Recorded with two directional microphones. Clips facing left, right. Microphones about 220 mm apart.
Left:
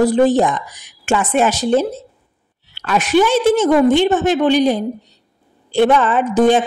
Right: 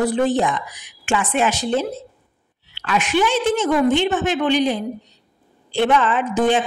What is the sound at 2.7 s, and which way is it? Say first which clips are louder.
A woman's voice: left 5 dB; 45° left (ahead or behind).